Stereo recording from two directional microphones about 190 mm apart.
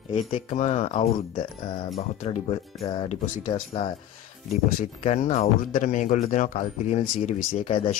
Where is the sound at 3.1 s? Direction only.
40° left (ahead or behind).